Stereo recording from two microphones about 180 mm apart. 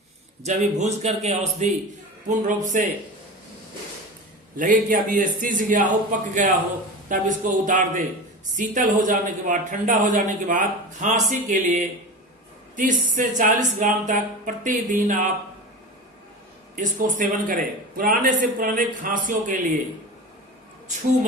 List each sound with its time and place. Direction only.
0.4 s a man's voice: 40° right (ahead or behind)
4.5 s speech: 50° right (ahead or behind)
16.7 s speech: 45° right (ahead or behind)